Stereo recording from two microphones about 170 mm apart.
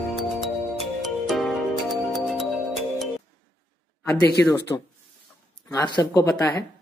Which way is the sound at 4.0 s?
15° left (ahead or behind).